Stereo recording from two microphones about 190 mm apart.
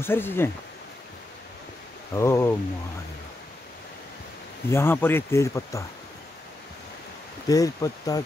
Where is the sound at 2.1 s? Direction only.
15° left (ahead or behind).